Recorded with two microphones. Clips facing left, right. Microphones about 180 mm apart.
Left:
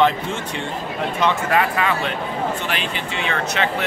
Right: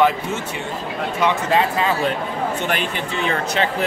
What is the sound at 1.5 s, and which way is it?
Speech, 30° right (ahead or behind).